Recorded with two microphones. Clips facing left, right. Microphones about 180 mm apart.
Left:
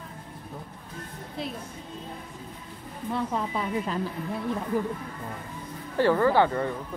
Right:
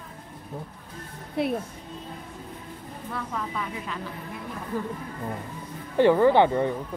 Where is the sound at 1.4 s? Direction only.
60° right (ahead or behind).